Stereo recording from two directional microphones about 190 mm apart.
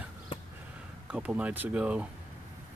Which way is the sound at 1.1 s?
5° right (ahead or behind).